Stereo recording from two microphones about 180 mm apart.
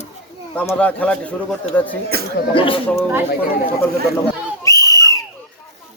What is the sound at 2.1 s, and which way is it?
Speech, 60° right (ahead or behind).